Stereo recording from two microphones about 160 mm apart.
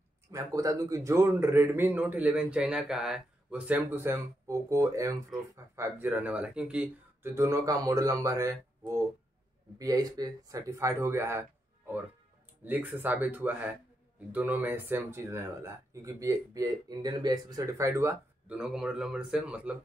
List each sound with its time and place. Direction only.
0.3 s a man's voice: 20° right (ahead or behind)
5.3 s speech: centre (ahead or behind)
5.8 s a man's voice: 10° right (ahead or behind)
9.8 s a man's voice: 20° right (ahead or behind)
18.6 s speech: 5° right (ahead or behind)